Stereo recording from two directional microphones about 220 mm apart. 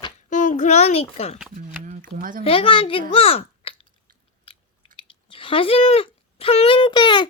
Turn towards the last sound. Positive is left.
turn(degrees=20)  # may be behind; listen again after turning